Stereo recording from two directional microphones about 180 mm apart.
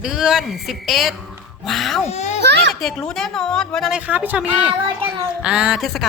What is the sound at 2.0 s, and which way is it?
Speech, 40° left (ahead or behind).